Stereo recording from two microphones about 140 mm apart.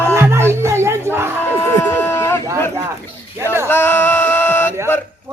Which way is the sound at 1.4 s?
15° left (ahead or behind).